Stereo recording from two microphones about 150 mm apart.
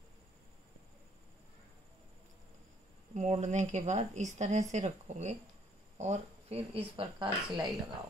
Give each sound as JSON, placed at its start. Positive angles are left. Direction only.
{"t": 3.2, "sound": "speech", "side_deg": -50}